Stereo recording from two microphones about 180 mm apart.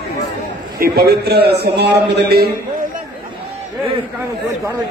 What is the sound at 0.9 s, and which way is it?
A man's voice, 65° right (ahead or behind).